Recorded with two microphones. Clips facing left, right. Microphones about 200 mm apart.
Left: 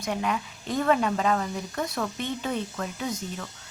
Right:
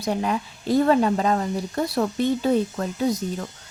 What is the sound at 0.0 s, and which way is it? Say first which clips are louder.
Speech: right 4 dB; 35° right (ahead or behind).